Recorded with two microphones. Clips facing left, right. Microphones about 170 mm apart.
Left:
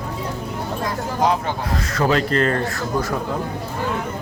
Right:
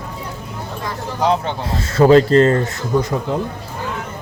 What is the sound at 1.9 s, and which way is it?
A man's voice, 30° right (ahead or behind).